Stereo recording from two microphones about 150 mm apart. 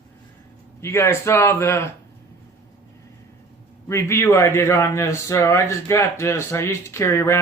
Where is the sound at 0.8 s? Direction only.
15° left (ahead or behind).